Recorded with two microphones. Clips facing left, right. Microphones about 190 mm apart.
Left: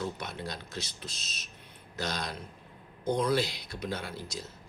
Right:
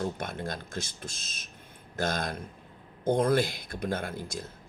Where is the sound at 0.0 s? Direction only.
50° right (ahead or behind).